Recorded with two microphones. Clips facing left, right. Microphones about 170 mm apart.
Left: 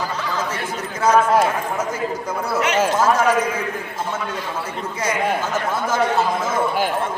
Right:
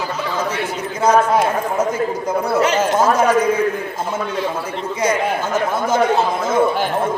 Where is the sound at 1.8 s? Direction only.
20° right (ahead or behind).